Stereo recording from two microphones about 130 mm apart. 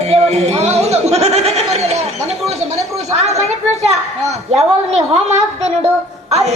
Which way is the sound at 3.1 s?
55° right (ahead or behind).